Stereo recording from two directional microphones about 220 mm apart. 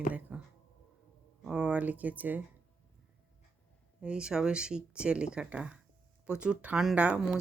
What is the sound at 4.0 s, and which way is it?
Speech, 5° right (ahead or behind).